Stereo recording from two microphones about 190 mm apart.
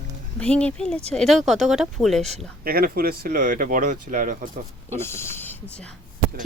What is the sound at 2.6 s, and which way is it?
Speech, 50° right (ahead or behind).